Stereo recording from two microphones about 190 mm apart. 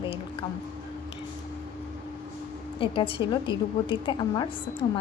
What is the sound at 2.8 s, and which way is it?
A woman's voice, 30° left (ahead or behind).